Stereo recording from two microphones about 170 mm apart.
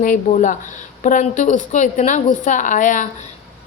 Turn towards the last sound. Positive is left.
turn(degrees=50)  # may be behind; listen again after turning